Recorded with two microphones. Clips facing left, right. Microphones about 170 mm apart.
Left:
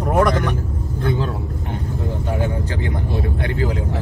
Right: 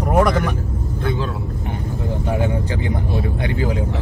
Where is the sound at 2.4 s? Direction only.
15° right (ahead or behind).